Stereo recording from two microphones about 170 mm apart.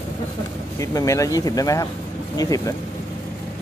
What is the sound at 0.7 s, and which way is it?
Speech, 20° left (ahead or behind).